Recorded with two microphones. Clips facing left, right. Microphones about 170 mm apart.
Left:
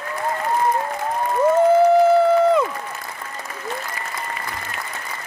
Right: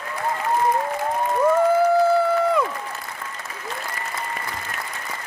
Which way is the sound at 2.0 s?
20° left (ahead or behind).